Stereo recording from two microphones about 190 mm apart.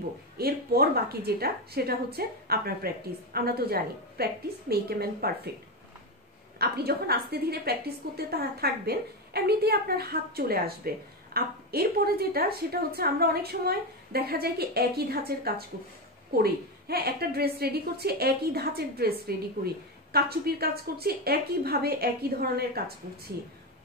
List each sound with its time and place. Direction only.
0.4 s a woman's voice: 55° right (ahead or behind)
6.6 s a woman's voice: 55° right (ahead or behind)